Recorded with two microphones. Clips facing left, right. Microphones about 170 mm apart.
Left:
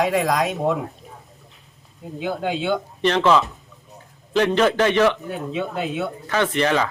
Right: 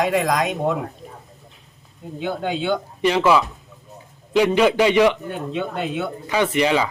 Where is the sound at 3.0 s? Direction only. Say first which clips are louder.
Right 1 dB; 10° right (ahead or behind).